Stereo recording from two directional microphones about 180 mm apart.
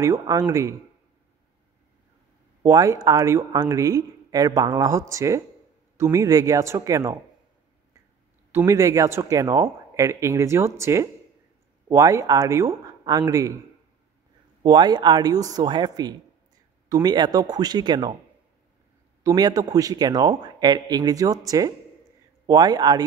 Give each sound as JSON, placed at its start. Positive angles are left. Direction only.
{"t": 0.0, "sound": "speech", "side_deg": -20}
{"t": 2.6, "sound": "speech", "side_deg": -20}
{"t": 8.5, "sound": "speech", "side_deg": -15}
{"t": 14.6, "sound": "speech", "side_deg": -25}
{"t": 19.2, "sound": "speech", "side_deg": -20}